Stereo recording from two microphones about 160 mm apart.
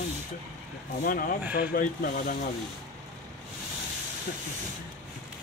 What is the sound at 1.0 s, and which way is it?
Speech, 60° left (ahead or behind).